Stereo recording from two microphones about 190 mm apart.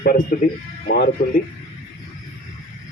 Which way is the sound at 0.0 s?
55° left (ahead or behind).